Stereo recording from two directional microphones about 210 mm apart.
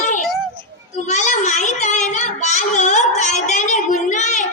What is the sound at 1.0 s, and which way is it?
Child singing, 35° left (ahead or behind).